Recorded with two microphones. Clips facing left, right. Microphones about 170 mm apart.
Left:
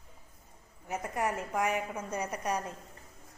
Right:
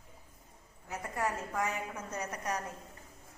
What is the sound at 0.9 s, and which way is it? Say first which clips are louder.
A woman's voice: left 3 dB; 20° left (ahead or behind).